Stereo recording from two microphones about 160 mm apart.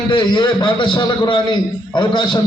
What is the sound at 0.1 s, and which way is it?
A man's voice, 30° left (ahead or behind).